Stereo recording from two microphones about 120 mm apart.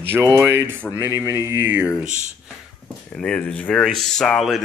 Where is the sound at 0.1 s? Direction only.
20° right (ahead or behind).